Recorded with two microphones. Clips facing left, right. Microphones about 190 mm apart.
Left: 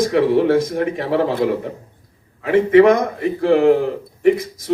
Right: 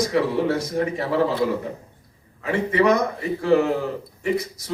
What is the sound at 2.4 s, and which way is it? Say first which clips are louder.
A man's voice: left 8 dB; 55° left (ahead or behind).